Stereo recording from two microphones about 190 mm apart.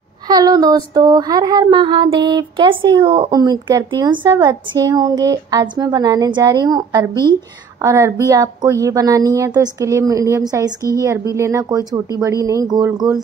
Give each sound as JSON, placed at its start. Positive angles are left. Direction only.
{"t": 0.3, "sound": "a woman's voice", "side_deg": -20}